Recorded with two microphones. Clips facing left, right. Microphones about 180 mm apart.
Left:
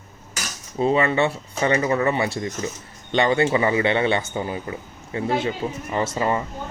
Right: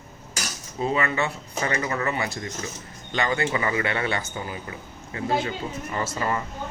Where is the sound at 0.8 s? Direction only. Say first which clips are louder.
Left 6 dB; 30° left (ahead or behind).